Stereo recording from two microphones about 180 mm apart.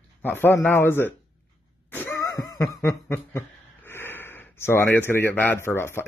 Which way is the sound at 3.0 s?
10° left (ahead or behind).